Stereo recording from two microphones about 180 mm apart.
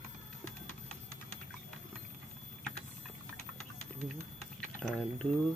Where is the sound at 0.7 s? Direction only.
40° left (ahead or behind).